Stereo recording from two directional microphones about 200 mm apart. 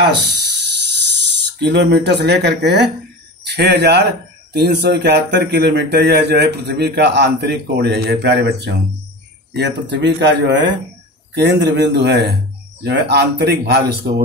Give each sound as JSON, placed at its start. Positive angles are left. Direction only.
{"t": 0.0, "sound": "speech", "side_deg": -60}